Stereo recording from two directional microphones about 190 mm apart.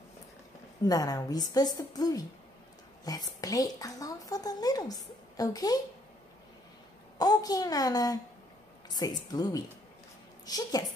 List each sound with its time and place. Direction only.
0.8 s a woman's voice: 20° left (ahead or behind)
3.3 s a woman's voice: 20° left (ahead or behind)
7.2 s a woman's voice: 20° left (ahead or behind)